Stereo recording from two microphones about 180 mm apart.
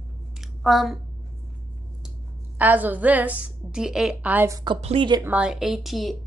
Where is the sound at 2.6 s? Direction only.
10° right (ahead or behind).